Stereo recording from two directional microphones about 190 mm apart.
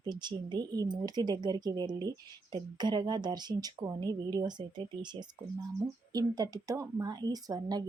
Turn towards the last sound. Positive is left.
turn(degrees=-20)  # may be behind; listen again after turning